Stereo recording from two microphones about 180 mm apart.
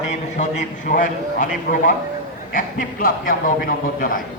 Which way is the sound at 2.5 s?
50° left (ahead or behind).